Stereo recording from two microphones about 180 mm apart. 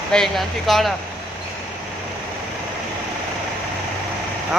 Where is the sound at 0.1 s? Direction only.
Centre (ahead or behind).